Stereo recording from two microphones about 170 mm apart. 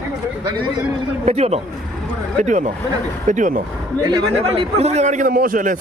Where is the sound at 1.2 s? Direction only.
40° right (ahead or behind).